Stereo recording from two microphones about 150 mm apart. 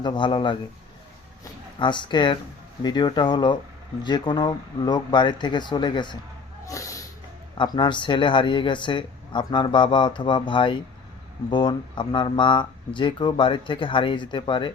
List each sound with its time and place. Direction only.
0.0 s speech: 30° left (ahead or behind)
1.8 s speech: 30° left (ahead or behind)
6.7 s snort: 20° left (ahead or behind)
7.6 s speech: 30° left (ahead or behind)